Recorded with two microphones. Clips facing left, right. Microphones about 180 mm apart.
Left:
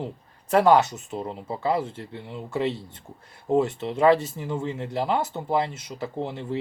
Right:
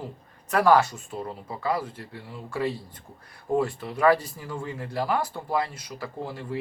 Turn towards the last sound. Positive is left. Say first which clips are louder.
# left 4 dB
turn(degrees=25)  # may be behind; listen again after turning